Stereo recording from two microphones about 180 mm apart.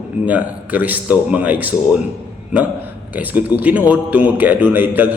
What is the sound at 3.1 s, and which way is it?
A man's voice, 10° right (ahead or behind).